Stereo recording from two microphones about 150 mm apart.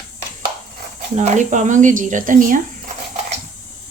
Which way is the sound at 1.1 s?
55° right (ahead or behind).